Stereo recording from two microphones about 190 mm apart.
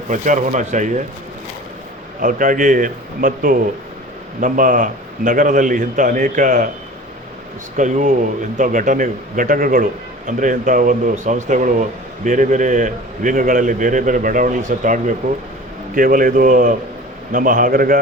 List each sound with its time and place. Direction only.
0.1 s speech: 40° right (ahead or behind)
2.2 s a man's voice: 45° right (ahead or behind)
7.8 s a man's voice: 40° right (ahead or behind)